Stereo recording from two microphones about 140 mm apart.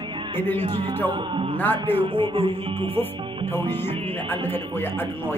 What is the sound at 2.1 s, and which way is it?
Music, 40° right (ahead or behind).